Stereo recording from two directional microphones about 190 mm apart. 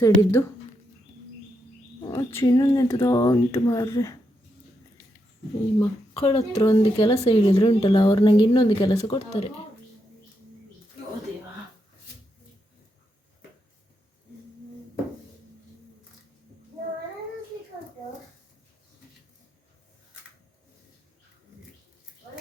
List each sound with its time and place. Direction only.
0.0 s speech: 15° left (ahead or behind)
2.0 s speech: 15° left (ahead or behind)
6.1 s a woman's voice: 30° left (ahead or behind)